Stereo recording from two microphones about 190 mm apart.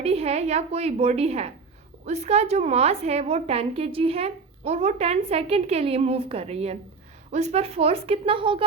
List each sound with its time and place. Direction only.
0.0 s a woman's voice: 35° right (ahead or behind)